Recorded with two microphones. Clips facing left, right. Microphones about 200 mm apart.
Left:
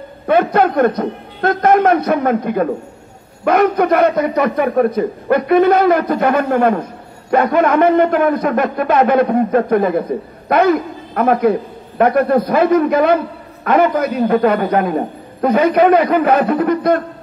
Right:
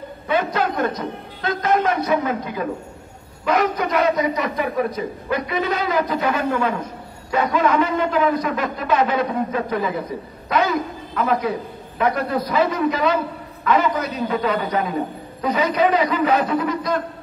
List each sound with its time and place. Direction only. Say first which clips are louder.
0.3 s a man's voice: left 8 dB; 55° left (ahead or behind)